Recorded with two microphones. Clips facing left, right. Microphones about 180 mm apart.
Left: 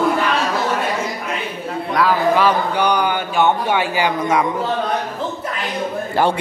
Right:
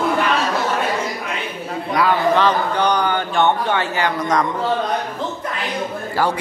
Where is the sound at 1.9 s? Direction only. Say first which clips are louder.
Even; centre (ahead or behind).